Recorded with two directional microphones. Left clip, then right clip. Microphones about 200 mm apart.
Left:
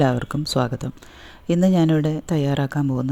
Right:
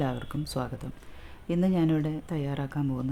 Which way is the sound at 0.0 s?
35° left (ahead or behind).